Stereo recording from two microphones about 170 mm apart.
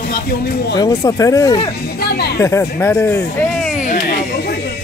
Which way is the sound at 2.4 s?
15° left (ahead or behind).